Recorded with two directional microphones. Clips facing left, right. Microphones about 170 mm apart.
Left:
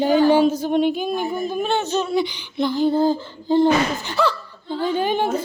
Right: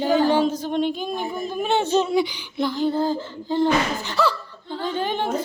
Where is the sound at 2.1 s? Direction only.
10° right (ahead or behind).